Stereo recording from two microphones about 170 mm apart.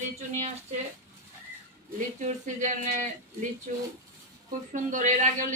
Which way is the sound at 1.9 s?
45° right (ahead or behind).